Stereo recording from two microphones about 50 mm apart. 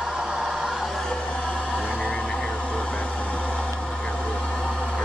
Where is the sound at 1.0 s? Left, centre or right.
Centre.